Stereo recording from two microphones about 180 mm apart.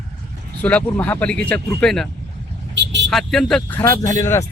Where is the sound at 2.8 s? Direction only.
75° right (ahead or behind).